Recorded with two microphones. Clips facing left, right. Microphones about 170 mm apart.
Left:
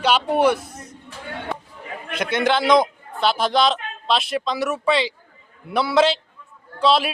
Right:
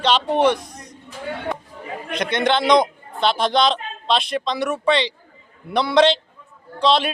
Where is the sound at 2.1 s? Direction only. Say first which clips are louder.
Even; 5° left (ahead or behind).